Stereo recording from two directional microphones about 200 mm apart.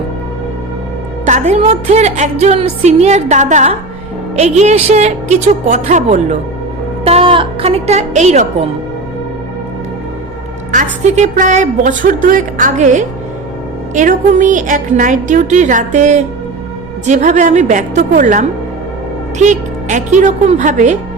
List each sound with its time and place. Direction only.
1.2 s a woman's voice: 35° right (ahead or behind)
7.0 s music: 30° right (ahead or behind)
10.7 s a woman's voice: 35° right (ahead or behind)